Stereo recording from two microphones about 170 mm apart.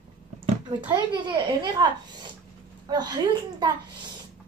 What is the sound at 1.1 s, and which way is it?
A woman's voice, 25° right (ahead or behind).